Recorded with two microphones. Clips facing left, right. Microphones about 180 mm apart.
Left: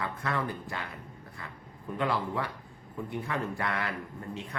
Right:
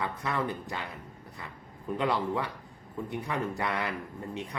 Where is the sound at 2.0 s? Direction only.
20° right (ahead or behind).